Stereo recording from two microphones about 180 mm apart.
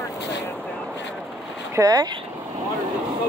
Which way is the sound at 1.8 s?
20° right (ahead or behind).